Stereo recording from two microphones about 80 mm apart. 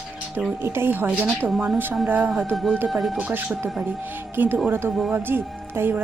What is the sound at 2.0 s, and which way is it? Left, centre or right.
Speech, centre.